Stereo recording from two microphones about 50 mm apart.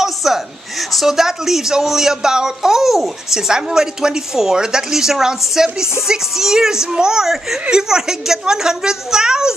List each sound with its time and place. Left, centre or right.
0.0 s a woman's voice: centre